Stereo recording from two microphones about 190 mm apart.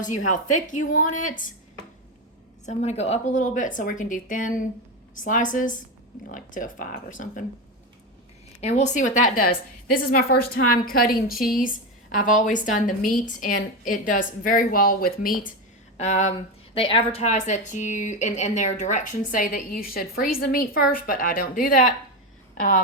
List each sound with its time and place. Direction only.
0.0 s a woman's voice: 40° left (ahead or behind)
2.6 s a woman's voice: 35° left (ahead or behind)
8.6 s a woman's voice: 40° left (ahead or behind)
11.3 s speech: centre (ahead or behind)
12.1 s a woman's voice: 40° left (ahead or behind)
16.0 s speech: 35° left (ahead or behind)